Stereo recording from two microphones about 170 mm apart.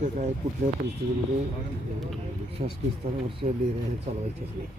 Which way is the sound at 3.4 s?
35° right (ahead or behind).